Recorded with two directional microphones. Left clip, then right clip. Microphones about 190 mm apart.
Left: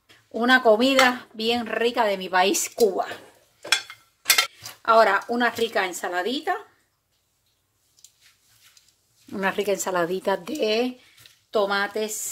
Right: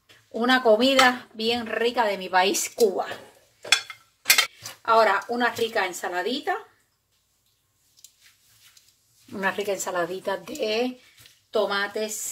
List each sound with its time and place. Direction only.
0.3 s speech: 25° left (ahead or behind)
4.4 s speech: 45° left (ahead or behind)
9.3 s speech: 40° left (ahead or behind)
9.8 s speech: 60° left (ahead or behind)
11.5 s speech: 40° left (ahead or behind)